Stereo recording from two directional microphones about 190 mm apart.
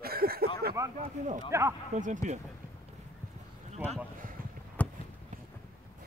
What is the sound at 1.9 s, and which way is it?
Speech, 40° right (ahead or behind).